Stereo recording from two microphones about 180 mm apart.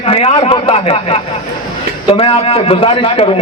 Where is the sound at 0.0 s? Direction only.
35° left (ahead or behind).